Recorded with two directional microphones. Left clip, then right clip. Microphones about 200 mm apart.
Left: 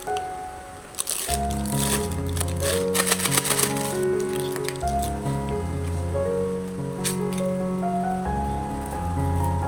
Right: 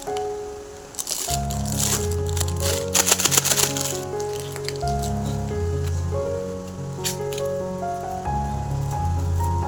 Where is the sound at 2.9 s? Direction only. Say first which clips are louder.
Right 3 dB; 25° right (ahead or behind).